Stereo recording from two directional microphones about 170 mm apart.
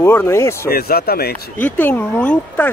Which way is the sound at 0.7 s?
65° left (ahead or behind).